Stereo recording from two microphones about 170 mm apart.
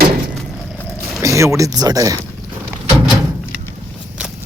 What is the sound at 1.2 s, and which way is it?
Speech, 15° right (ahead or behind).